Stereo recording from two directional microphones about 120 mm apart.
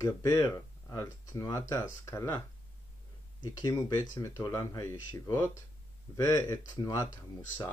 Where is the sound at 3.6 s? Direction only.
30° left (ahead or behind).